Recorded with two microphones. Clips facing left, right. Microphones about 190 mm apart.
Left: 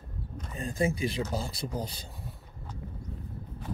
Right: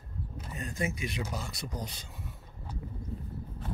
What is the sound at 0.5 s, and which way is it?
Speech, 30° left (ahead or behind).